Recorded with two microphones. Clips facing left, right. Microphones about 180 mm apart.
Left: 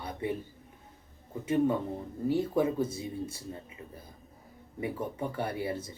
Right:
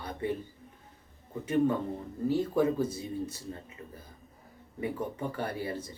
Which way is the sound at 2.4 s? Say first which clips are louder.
Right 1 dB; 10° left (ahead or behind).